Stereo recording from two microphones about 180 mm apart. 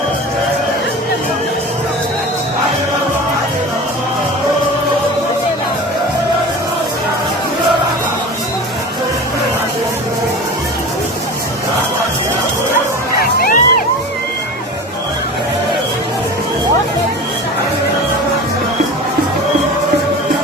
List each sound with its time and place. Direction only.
13.4 s music: 50° left (ahead or behind)